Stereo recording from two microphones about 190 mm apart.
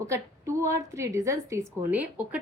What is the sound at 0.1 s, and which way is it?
A woman's voice, 15° right (ahead or behind).